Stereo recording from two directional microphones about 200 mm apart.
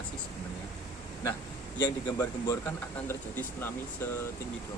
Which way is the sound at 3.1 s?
10° left (ahead or behind).